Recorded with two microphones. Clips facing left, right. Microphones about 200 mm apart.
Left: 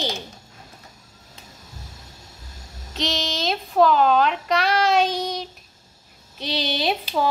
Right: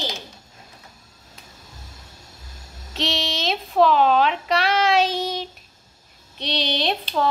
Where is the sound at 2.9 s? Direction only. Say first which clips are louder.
Even; centre (ahead or behind).